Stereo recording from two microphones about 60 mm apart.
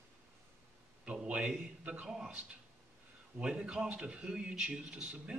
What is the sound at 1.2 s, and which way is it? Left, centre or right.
A man's voice, centre.